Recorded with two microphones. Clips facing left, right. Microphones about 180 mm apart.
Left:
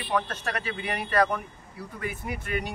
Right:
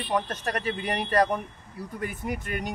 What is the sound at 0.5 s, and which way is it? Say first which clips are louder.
Speech: right 4 dB; 40° right (ahead or behind).